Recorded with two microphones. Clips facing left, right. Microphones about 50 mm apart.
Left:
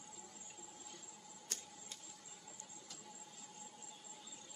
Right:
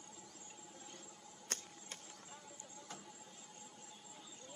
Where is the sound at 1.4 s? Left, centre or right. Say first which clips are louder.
Right 4 dB; right.